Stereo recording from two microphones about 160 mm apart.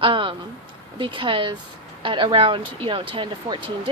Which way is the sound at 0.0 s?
30° right (ahead or behind).